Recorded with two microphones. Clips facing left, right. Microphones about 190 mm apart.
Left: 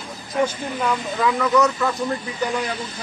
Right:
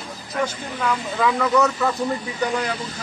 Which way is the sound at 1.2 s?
Centre (ahead or behind).